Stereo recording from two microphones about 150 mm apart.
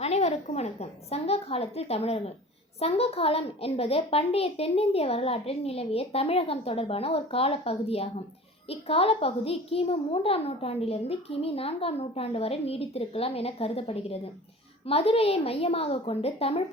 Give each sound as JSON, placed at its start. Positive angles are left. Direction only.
{"t": 0.0, "sound": "a woman's voice", "side_deg": 45}